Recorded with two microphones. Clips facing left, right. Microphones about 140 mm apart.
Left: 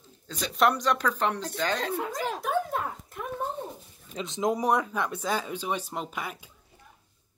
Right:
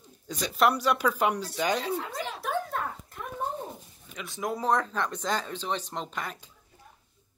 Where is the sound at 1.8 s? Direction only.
45° left (ahead or behind).